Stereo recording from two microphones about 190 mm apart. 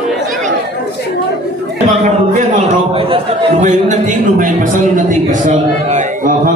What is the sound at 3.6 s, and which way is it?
A man's voice, 40° right (ahead or behind).